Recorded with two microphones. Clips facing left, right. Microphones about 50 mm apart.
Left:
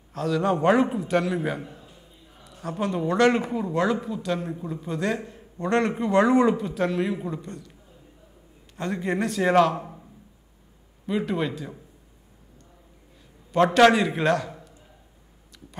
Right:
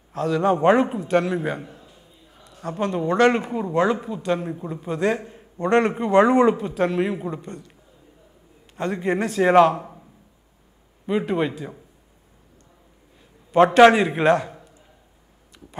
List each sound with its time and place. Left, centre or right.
0.1 s a man's voice: centre
8.7 s a man's voice: centre
9.4 s a man's voice: centre
9.8 s a sound: centre
11.1 s a man's voice: centre
13.7 s a man's voice: right
14.5 s a sound: centre